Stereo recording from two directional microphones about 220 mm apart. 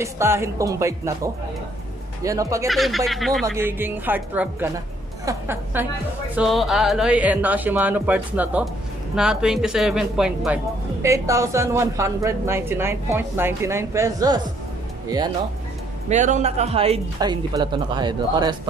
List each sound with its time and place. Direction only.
0.0 s speech: 10° right (ahead or behind)
2.7 s speech: centre (ahead or behind)
11.0 s speech: 15° right (ahead or behind)
16.1 s speech: 30° right (ahead or behind)